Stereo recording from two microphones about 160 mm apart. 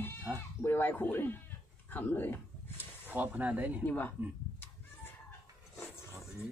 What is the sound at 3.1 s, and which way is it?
Speech, 10° right (ahead or behind).